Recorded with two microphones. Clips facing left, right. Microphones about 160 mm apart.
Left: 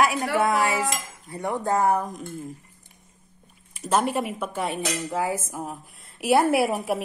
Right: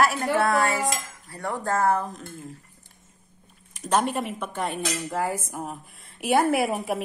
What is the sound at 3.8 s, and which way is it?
A woman's voice, 5° left (ahead or behind).